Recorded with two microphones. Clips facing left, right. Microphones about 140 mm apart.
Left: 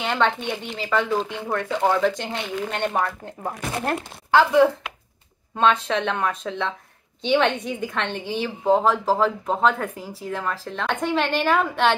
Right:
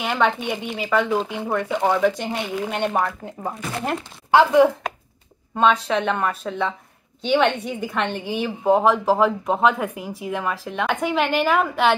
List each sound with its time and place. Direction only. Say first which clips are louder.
0.0 s speech: right 1 dB; 10° right (ahead or behind)
4.3 s speech: right 2 dB; 20° right (ahead or behind)
5.6 s speech: right 2 dB; 5° right (ahead or behind)